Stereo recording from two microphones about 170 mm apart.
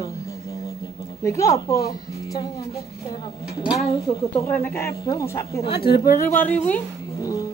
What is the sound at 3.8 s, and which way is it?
Speech, 20° left (ahead or behind).